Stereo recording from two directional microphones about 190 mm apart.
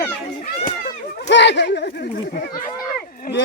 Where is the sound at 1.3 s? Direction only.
65° left (ahead or behind).